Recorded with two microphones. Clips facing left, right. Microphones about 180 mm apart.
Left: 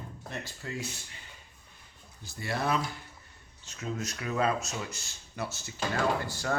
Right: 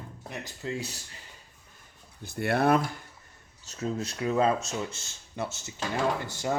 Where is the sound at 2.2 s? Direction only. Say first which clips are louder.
Right 7 dB; 60° right (ahead or behind).